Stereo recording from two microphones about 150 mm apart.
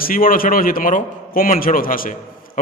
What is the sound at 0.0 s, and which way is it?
A man's voice, 70° left (ahead or behind).